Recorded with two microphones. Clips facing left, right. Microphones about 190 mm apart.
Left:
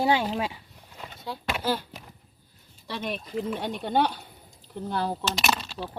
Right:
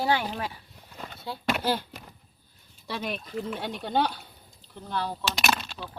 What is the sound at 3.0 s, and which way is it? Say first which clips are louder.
Speech: left 3 dB; centre (ahead or behind).